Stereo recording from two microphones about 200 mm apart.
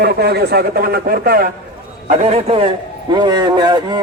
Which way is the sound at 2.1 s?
30° right (ahead or behind).